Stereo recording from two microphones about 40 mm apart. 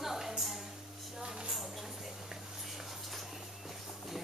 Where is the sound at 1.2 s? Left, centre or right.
Centre.